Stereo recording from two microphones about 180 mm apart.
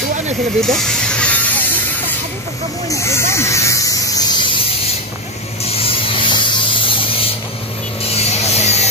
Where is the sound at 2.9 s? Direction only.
15° left (ahead or behind).